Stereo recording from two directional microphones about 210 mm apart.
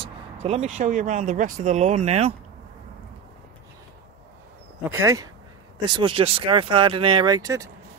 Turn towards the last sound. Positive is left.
turn(degrees=-15)  # may be behind; listen again after turning